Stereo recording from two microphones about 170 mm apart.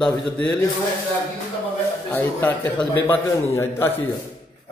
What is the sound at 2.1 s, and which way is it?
Speech, 10° left (ahead or behind).